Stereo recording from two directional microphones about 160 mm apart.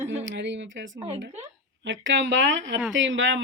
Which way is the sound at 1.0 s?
40° right (ahead or behind).